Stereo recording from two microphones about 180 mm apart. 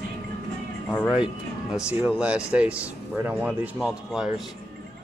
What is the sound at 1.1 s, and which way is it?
Speech, 5° right (ahead or behind).